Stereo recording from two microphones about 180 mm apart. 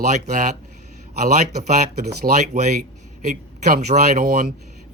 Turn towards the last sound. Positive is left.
turn(degrees=-45)  # may be behind; listen again after turning